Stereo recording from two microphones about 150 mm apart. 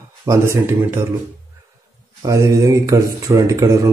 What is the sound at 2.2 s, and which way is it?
A man's voice, 20° right (ahead or behind).